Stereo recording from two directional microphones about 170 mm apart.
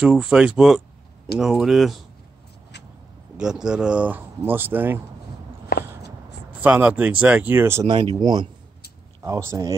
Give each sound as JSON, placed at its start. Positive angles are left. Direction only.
{"t": 0.0, "sound": "speech", "side_deg": -5}
{"t": 3.6, "sound": "speech", "side_deg": -5}
{"t": 5.7, "sound": "a sound", "side_deg": 65}
{"t": 6.5, "sound": "speech", "side_deg": -10}
{"t": 7.9, "sound": "speech", "side_deg": -30}